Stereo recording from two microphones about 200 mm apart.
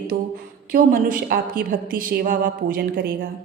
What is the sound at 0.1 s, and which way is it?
A woman's voice, 40° right (ahead or behind).